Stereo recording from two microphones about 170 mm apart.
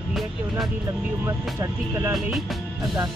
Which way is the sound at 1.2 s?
15° right (ahead or behind).